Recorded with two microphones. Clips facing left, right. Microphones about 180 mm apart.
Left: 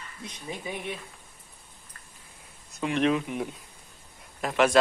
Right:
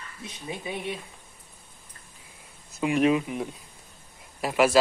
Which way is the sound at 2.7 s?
10° right (ahead or behind).